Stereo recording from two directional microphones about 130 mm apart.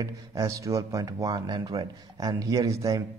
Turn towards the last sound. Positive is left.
turn(degrees=-25)  # may be behind; listen again after turning